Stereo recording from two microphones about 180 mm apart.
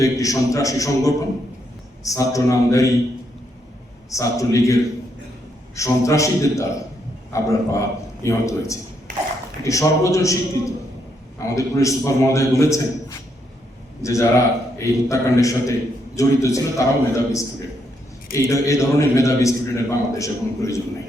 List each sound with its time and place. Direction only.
0.0 s a man's voice: 20° left (ahead or behind)
4.1 s a man's voice: 20° left (ahead or behind)